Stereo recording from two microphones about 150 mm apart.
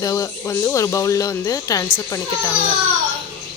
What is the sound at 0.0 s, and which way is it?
Speech, 20° left (ahead or behind).